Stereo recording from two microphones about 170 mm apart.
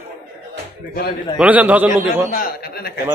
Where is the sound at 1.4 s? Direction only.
10° right (ahead or behind).